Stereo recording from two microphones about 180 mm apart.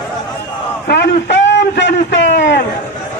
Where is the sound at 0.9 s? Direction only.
70° left (ahead or behind).